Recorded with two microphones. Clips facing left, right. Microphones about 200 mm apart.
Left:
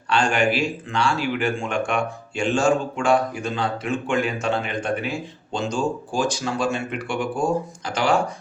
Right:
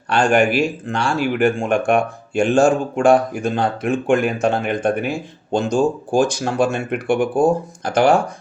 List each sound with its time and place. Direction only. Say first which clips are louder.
0.1 s speech: right 5 dB; 50° right (ahead or behind)